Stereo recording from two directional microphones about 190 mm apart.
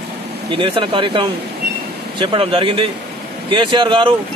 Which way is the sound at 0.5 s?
30° right (ahead or behind).